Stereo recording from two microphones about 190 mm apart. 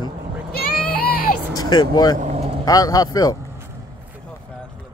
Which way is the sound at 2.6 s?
20° left (ahead or behind).